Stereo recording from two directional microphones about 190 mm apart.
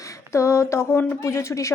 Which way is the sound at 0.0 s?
15° left (ahead or behind).